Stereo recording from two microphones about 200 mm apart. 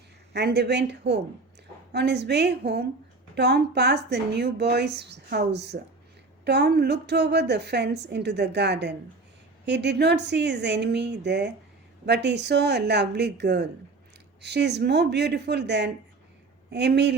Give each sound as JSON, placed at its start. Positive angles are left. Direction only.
{"t": 0.3, "sound": "a woman's voice", "side_deg": -55}